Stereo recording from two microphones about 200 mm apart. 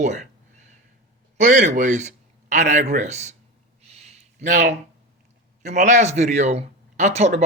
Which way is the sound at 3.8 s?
30° right (ahead or behind).